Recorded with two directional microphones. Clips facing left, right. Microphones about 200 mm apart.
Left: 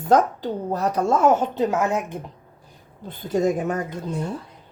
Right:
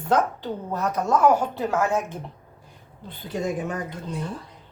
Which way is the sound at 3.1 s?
45° left (ahead or behind).